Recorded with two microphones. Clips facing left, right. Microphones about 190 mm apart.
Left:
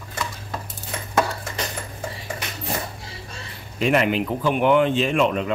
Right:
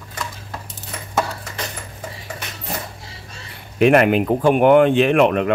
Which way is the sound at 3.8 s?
60° right (ahead or behind).